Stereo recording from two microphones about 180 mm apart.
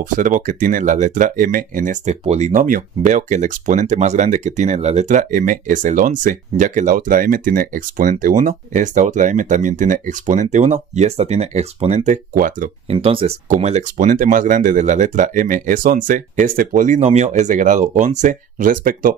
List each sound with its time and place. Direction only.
0.0 s speech: 45° right (ahead or behind)
12.9 s speech: 30° right (ahead or behind); by 19.1 s 50° right (ahead or behind)